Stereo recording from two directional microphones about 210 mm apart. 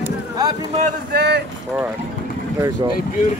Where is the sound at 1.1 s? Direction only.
50° right (ahead or behind).